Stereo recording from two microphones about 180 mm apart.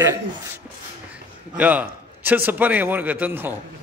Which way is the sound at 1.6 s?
10° right (ahead or behind).